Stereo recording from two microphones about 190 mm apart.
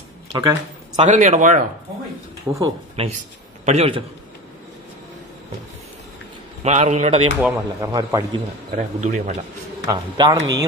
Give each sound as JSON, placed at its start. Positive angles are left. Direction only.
{"t": 0.9, "sound": "speech", "side_deg": -40}
{"t": 2.5, "sound": "speech", "side_deg": -15}
{"t": 3.0, "sound": "speech", "side_deg": -30}
{"t": 6.6, "sound": "speech", "side_deg": -35}
{"t": 7.3, "sound": "speech", "side_deg": -10}
{"t": 7.9, "sound": "a man's voice", "side_deg": -20}
{"t": 8.7, "sound": "speech", "side_deg": -40}
{"t": 9.8, "sound": "a man's voice", "side_deg": -20}